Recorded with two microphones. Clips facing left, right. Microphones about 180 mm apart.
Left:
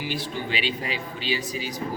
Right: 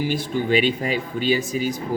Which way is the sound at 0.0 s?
45° right (ahead or behind).